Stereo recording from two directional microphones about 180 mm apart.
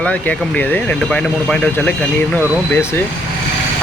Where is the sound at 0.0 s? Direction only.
5° left (ahead or behind).